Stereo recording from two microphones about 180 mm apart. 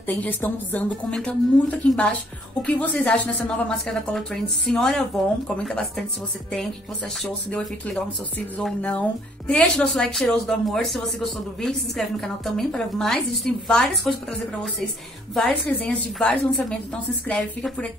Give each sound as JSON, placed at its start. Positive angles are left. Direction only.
{"t": 0.0, "sound": "a woman's voice", "side_deg": 10}
{"t": 7.5, "sound": "a woman's voice", "side_deg": 5}
{"t": 12.2, "sound": "a woman's voice", "side_deg": 5}
{"t": 15.3, "sound": "a woman's voice", "side_deg": 5}